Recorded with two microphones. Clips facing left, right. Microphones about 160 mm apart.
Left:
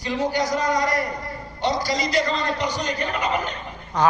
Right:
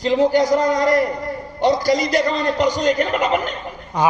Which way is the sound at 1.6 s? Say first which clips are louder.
Right 7 dB; 50° right (ahead or behind).